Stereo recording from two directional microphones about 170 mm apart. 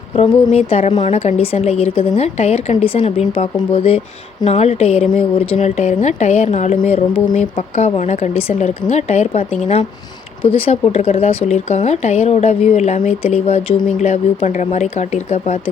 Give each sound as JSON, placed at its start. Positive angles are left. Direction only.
{"t": 0.5, "sound": "speech", "side_deg": 35}